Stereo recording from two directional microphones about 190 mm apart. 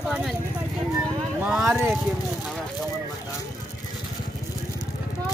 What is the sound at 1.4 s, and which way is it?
Speech, 5° right (ahead or behind).